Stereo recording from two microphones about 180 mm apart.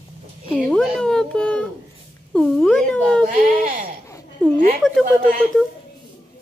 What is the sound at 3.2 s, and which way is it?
Speech, 45° right (ahead or behind).